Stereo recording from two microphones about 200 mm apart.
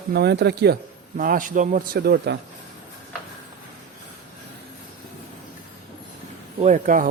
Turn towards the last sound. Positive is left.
turn(degrees=-40)  # may be behind; listen again after turning